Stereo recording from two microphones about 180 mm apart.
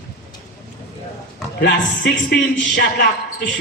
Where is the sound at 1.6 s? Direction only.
70° left (ahead or behind).